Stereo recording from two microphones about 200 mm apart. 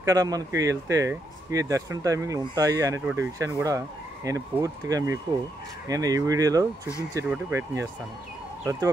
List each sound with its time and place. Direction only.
0.0 s speech: 15° right (ahead or behind)